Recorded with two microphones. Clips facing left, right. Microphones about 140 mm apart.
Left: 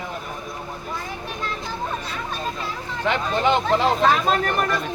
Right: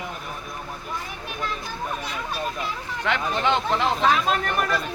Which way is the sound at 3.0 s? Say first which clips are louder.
Left 3 dB; 15° left (ahead or behind).